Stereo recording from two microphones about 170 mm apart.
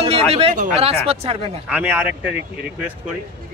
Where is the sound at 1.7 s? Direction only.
10° right (ahead or behind).